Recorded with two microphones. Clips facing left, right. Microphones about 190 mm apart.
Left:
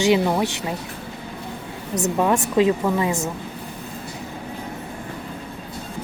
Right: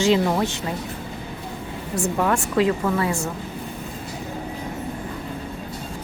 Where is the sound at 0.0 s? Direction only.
15° left (ahead or behind).